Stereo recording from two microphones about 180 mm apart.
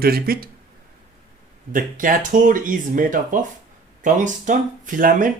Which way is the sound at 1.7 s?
50° right (ahead or behind).